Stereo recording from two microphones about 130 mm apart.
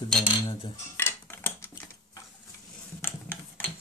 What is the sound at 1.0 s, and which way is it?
Dishes, 20° left (ahead or behind).